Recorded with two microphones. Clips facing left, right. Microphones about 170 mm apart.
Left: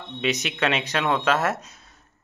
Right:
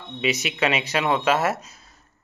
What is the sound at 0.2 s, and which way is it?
Speech, 5° right (ahead or behind).